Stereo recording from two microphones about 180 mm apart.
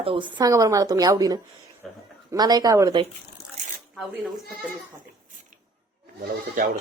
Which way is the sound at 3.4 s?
35° left (ahead or behind).